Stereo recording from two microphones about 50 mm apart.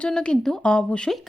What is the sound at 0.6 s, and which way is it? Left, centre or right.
Speech, left.